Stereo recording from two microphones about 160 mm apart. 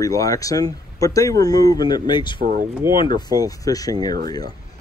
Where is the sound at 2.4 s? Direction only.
60° right (ahead or behind).